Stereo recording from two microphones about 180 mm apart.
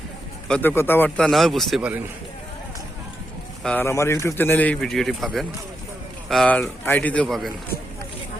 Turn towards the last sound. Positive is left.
turn(degrees=0)  # may be behind; listen again after turning